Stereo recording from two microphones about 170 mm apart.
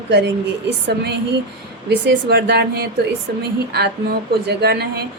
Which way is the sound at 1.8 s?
85° right.